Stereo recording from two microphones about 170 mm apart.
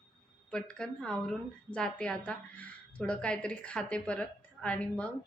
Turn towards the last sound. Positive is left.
turn(degrees=5)  # may be behind; listen again after turning